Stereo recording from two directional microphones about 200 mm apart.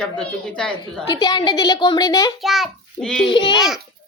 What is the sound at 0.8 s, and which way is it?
A woman's voice, 20° left (ahead or behind).